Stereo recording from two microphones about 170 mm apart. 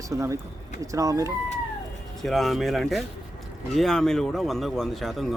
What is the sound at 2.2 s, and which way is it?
A man's voice, centre (ahead or behind).